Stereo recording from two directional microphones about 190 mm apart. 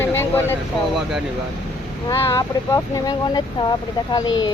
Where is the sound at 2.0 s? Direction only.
15° left (ahead or behind).